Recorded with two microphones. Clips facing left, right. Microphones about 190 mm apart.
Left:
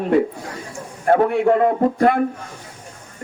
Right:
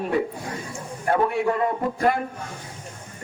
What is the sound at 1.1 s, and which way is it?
A man's voice, 55° left (ahead or behind).